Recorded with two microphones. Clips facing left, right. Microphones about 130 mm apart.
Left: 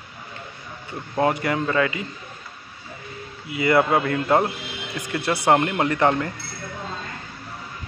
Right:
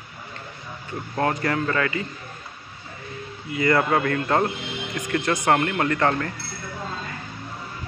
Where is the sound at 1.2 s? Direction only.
15° left (ahead or behind).